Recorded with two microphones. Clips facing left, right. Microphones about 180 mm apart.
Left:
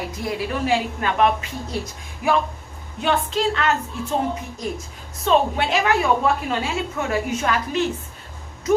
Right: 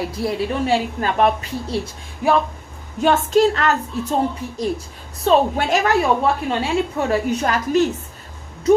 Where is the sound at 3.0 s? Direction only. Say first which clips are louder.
Right 6 dB; 45° right (ahead or behind).